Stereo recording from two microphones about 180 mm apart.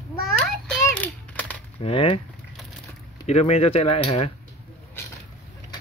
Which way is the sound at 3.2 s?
35° left (ahead or behind).